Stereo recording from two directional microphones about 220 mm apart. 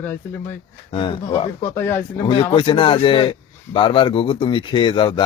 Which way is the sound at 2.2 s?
25° left (ahead or behind).